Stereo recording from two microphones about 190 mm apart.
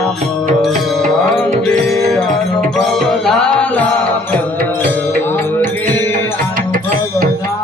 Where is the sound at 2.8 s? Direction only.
Centre (ahead or behind).